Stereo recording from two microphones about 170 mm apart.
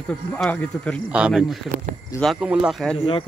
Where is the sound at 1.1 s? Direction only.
5° right (ahead or behind).